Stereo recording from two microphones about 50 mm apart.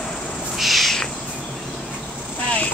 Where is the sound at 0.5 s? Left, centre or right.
Centre.